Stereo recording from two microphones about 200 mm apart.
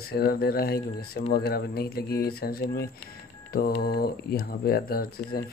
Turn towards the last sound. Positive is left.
turn(degrees=50)  # may be behind; listen again after turning